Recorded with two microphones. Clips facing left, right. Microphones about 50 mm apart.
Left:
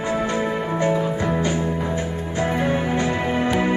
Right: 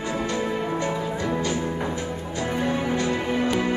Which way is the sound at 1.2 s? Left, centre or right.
Left.